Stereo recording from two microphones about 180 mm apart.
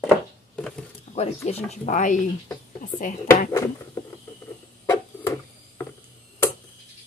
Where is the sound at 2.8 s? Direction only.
45° left (ahead or behind).